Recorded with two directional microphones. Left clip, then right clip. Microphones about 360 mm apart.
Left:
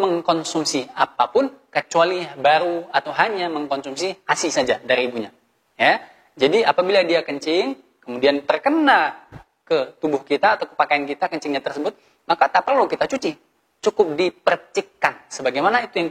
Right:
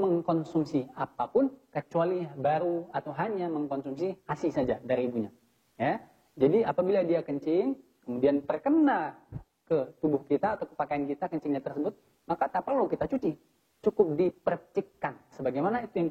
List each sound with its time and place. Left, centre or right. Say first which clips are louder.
0.2 s a woman's voice: left 10 dB; centre
0.6 s speech: left 10 dB; centre